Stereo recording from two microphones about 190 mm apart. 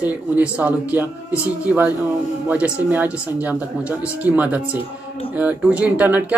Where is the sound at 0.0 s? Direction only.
5° right (ahead or behind).